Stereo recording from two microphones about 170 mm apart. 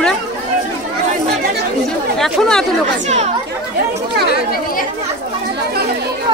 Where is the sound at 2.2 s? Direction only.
5° left (ahead or behind).